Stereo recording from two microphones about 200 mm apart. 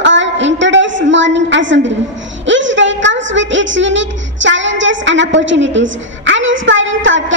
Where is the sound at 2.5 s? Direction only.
65° right (ahead or behind).